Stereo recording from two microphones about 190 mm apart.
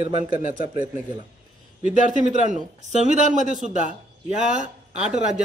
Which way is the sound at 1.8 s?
40° right (ahead or behind).